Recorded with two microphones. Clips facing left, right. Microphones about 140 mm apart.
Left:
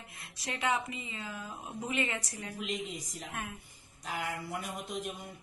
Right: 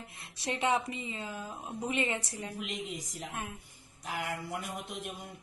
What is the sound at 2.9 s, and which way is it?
Speech, 90° right.